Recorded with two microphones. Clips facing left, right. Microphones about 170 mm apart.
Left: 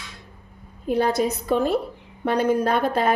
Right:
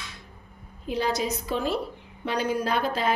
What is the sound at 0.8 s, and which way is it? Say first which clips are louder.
A woman's voice: left 6 dB; 55° left (ahead or behind).